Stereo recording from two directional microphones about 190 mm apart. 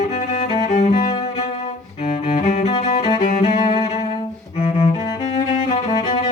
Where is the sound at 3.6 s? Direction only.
30° left (ahead or behind).